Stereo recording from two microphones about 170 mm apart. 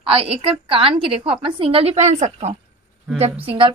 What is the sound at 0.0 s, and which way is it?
A woman's voice, 35° right (ahead or behind).